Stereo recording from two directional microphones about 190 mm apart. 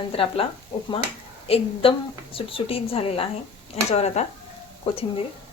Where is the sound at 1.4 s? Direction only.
30° left (ahead or behind).